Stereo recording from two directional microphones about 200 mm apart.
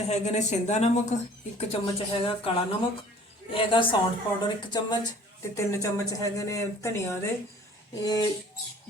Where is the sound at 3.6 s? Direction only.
25° left (ahead or behind).